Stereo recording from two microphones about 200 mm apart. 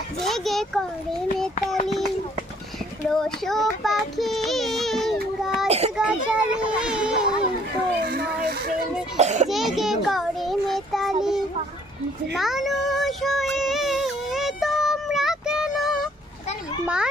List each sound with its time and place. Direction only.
0.3 s a child's voice: centre (ahead or behind)
3.1 s child singing: 5° left (ahead or behind)
4.4 s baby cry: centre (ahead or behind)
5.6 s child singing: 30° right (ahead or behind)
6.0 s children playing: 5° right (ahead or behind)
8.0 s a sound: 50° right (ahead or behind)
9.1 s cough: 35° right (ahead or behind)
9.5 s child singing: centre (ahead or behind)